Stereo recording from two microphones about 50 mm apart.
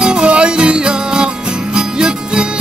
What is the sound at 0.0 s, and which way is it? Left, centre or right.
Music, right.